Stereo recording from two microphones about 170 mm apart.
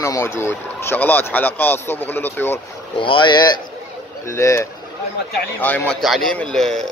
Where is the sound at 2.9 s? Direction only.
30° left (ahead or behind); by 6.8 s centre (ahead or behind).